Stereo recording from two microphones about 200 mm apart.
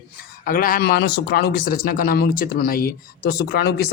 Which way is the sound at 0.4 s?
45° left (ahead or behind).